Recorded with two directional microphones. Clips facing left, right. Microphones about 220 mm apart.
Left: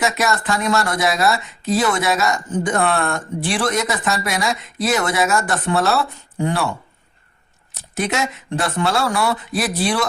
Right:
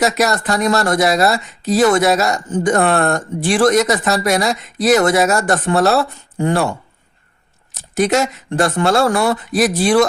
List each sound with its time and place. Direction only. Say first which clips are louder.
0.0 s speech: right 4 dB; 40° right (ahead or behind)
7.9 s speech: right 7 dB; 40° right (ahead or behind)